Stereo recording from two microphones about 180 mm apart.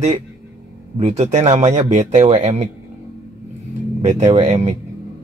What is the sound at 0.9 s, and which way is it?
Speech, 35° right (ahead or behind).